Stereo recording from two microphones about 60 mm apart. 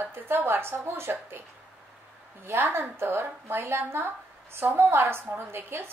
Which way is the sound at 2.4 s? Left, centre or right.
Right.